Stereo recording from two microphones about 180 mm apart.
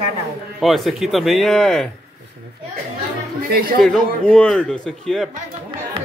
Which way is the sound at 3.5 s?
55° right (ahead or behind).